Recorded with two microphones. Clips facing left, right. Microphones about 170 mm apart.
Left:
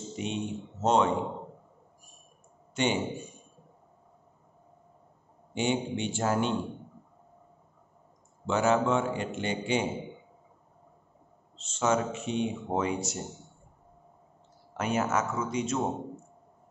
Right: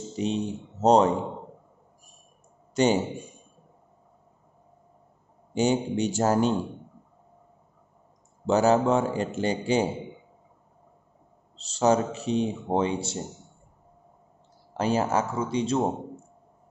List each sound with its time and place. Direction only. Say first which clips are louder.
0.1 s speech: right 5 dB; 35° right (ahead or behind)
2.7 s a man's voice: right 6 dB; 40° right (ahead or behind)
5.5 s a man's voice: right 5 dB; 40° right (ahead or behind)
8.5 s a man's voice: right 5 dB; 35° right (ahead or behind)
11.5 s a man's voice: right 5 dB; 35° right (ahead or behind)
14.7 s a man's voice: right 4 dB; 30° right (ahead or behind)